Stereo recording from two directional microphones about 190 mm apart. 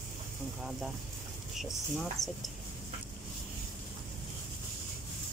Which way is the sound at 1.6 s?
Centre (ahead or behind).